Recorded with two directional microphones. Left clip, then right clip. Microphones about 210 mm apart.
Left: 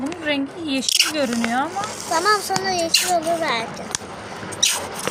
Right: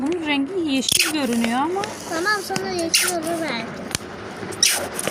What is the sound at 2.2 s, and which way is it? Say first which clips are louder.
Speech: left 3 dB; 55° left (ahead or behind).